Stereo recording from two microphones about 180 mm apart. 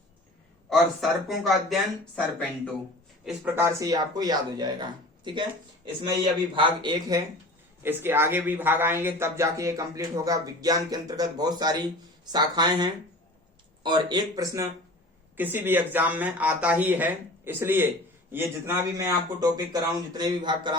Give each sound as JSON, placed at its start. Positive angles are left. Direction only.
{"t": 0.7, "sound": "speech", "side_deg": 0}
{"t": 3.2, "sound": "speech", "side_deg": -10}
{"t": 7.8, "sound": "speech", "side_deg": -10}